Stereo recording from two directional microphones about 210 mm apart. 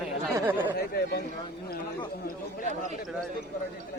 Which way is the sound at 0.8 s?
50° left (ahead or behind).